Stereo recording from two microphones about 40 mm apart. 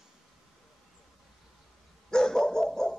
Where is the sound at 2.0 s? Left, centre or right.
Centre.